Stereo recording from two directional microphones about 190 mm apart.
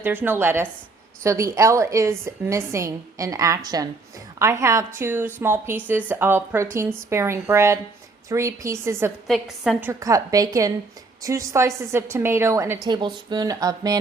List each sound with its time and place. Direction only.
0.0 s a woman's voice: 10° right (ahead or behind)
9.2 s a woman's voice: centre (ahead or behind)
10.0 s a woman's voice: 20° right (ahead or behind)